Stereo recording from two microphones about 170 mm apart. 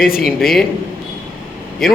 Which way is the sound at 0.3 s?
Centre (ahead or behind).